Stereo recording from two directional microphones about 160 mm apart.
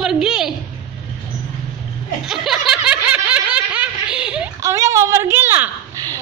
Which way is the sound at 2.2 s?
Centre (ahead or behind).